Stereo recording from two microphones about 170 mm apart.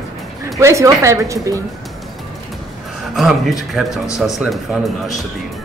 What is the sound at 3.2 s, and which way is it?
Speech, centre (ahead or behind).